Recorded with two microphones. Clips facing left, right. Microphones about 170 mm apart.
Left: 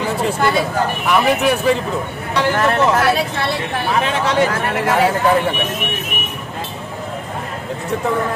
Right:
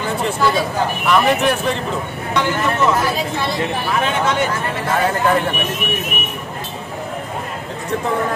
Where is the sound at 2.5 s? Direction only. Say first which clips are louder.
Left 3 dB; 70° left (ahead or behind).